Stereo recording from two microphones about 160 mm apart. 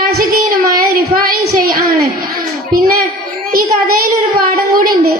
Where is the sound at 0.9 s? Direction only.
65° right (ahead or behind).